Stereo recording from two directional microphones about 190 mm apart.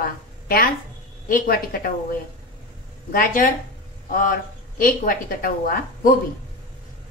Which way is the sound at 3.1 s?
45° left (ahead or behind).